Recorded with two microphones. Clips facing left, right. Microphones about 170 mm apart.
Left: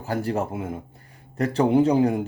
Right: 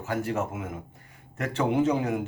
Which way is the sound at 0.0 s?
35° left (ahead or behind).